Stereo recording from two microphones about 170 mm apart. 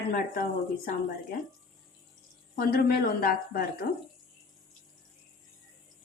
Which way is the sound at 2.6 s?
65° left (ahead or behind).